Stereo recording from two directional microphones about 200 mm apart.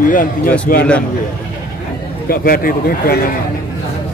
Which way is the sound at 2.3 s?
45° left (ahead or behind).